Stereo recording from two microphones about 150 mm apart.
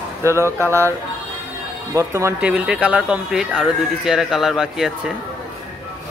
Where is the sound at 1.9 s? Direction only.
20° right (ahead or behind).